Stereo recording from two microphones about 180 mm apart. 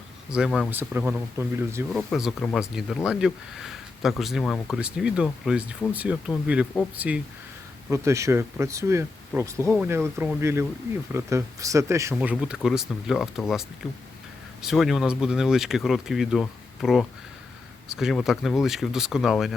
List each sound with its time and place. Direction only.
0.3 s speech: 5° right (ahead or behind)
1.9 s speech: centre (ahead or behind)